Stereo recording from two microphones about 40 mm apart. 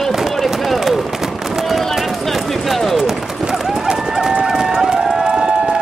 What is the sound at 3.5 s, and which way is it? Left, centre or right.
Horse, centre.